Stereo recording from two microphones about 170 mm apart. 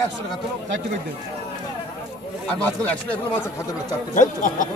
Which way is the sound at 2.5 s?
10° left (ahead or behind).